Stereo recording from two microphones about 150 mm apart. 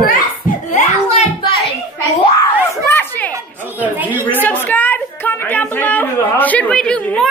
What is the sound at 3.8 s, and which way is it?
Speech, 10° right (ahead or behind).